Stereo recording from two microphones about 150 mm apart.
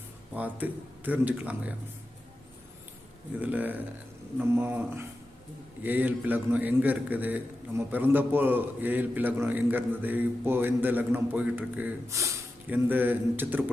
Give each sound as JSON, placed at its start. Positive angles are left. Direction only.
{"t": 0.3, "sound": "a man's voice", "side_deg": -10}
{"t": 3.4, "sound": "a man's voice", "side_deg": -10}